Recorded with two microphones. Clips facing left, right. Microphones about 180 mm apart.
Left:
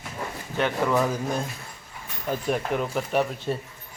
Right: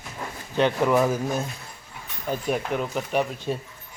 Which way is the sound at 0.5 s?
20° right (ahead or behind).